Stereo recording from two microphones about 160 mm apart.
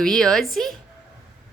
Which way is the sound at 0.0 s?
5° left (ahead or behind).